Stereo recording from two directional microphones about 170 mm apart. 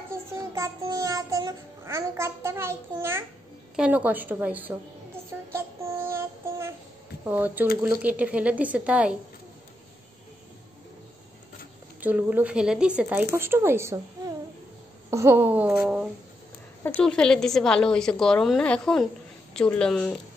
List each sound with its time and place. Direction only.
0.1 s child singing: 15° right (ahead or behind)
12.0 s child singing: 10° right (ahead or behind)
16.8 s a woman's voice: 5° left (ahead or behind)